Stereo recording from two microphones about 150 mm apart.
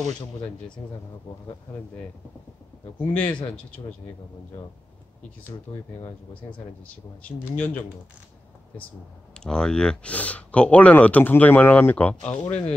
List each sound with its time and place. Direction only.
3.0 s speech: 10° left (ahead or behind)
5.7 s speech: 35° left (ahead or behind)
7.2 s speech: 10° left (ahead or behind)
9.4 s speech: 5° left (ahead or behind)